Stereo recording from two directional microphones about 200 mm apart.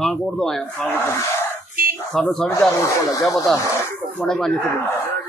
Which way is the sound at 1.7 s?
45° right (ahead or behind).